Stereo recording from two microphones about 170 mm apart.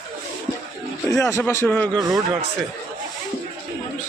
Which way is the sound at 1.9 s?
25° right (ahead or behind).